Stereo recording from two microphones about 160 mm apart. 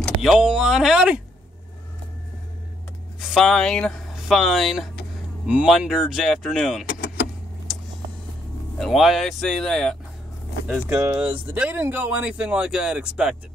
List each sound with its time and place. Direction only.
0.0 s speech: centre (ahead or behind)
3.2 s speech: centre (ahead or behind)
6.9 s vehicle: 75° left (ahead or behind)
8.7 s speech: centre (ahead or behind)
10.9 s speech: 15° right (ahead or behind)